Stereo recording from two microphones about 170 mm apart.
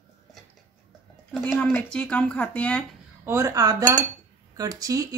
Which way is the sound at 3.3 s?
15° right (ahead or behind).